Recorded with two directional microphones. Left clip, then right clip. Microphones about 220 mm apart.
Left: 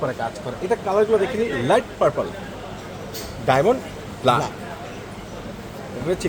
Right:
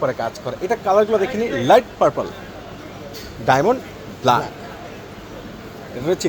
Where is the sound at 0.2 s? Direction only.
40° right (ahead or behind).